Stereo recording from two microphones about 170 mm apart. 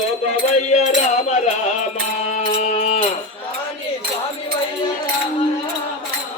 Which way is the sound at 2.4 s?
40° left (ahead or behind).